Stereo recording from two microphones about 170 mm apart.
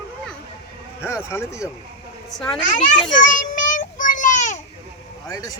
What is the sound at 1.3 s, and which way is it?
Speech, 15° left (ahead or behind).